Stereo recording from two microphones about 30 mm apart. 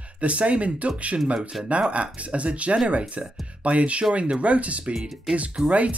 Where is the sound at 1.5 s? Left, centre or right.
Centre.